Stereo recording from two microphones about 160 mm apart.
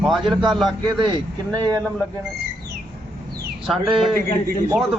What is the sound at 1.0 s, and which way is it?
Speech, 25° right (ahead or behind).